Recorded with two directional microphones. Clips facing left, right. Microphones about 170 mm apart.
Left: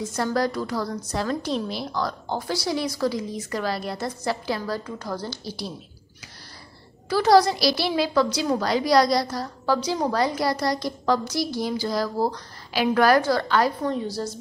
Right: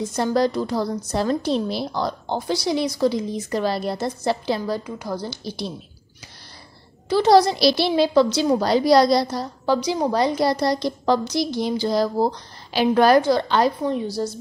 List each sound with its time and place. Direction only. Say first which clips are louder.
0.1 s a woman's voice: right 4 dB; 25° right (ahead or behind)
7.1 s a woman's voice: right 2 dB; 25° right (ahead or behind)
9.8 s a woman's voice: right 3 dB; 15° right (ahead or behind)